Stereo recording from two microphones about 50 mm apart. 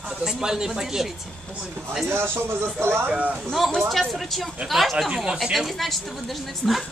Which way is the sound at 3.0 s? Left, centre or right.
Right.